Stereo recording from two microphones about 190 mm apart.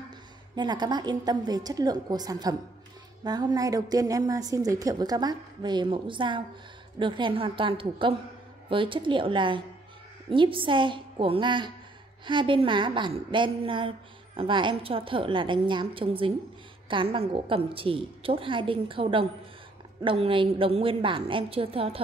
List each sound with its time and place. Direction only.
0.6 s a woman's voice: 20° right (ahead or behind)